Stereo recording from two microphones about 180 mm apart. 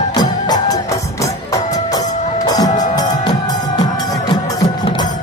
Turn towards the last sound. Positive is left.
turn(degrees=20)  # may be behind; listen again after turning